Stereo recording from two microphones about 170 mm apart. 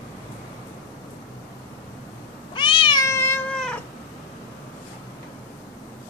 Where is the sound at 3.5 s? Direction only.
5° left (ahead or behind).